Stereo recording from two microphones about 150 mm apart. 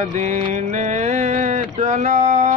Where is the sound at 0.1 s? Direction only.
55° right (ahead or behind).